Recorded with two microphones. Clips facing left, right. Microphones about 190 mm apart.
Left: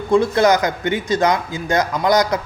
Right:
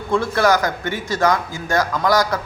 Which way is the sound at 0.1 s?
20° left (ahead or behind).